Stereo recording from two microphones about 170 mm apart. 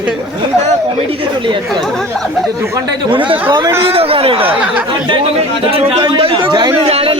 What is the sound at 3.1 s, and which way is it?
A man's voice, 30° right (ahead or behind).